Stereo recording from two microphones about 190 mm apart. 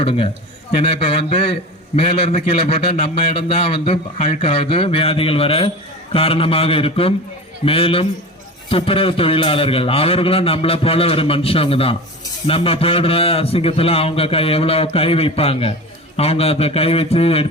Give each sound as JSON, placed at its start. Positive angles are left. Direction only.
{"t": 0.0, "sound": "a man's voice", "side_deg": 30}